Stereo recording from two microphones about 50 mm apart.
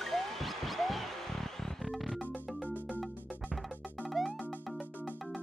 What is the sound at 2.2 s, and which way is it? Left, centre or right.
Music, right.